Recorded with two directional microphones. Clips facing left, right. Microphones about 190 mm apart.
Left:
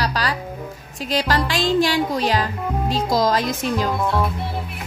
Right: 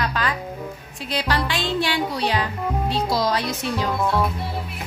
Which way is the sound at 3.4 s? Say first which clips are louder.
Left 3 dB; 90° left.